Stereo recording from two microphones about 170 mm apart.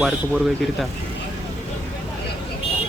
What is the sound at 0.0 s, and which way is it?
Speech, centre (ahead or behind).